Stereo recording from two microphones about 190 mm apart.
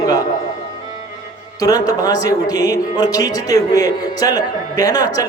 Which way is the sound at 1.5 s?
20° left (ahead or behind).